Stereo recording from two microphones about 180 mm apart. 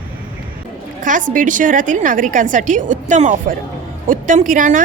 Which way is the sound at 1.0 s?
45° right (ahead or behind).